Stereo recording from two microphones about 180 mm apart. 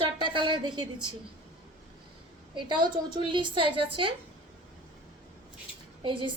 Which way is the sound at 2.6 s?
25° right (ahead or behind).